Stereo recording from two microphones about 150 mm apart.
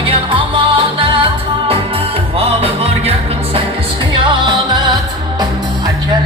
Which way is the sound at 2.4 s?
40° right (ahead or behind).